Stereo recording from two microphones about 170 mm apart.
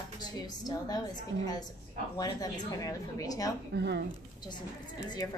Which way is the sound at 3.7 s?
80° right.